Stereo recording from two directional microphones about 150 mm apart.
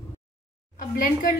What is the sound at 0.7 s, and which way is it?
Speech, 70° left (ahead or behind).